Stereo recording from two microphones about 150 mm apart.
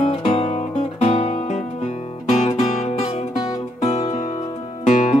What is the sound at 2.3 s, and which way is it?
Music, 45° left (ahead or behind).